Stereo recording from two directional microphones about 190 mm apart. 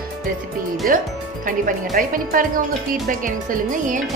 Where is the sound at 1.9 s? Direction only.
45° right (ahead or behind).